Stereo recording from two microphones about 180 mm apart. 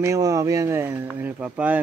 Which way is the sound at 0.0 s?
20° right (ahead or behind).